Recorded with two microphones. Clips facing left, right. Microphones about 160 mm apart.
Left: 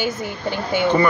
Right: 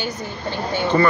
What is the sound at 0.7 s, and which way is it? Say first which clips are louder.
Speech: left 1 dB; 15° left (ahead or behind).